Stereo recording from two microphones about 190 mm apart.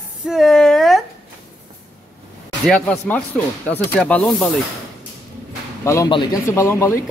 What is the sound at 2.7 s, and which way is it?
Speech, 5° left (ahead or behind).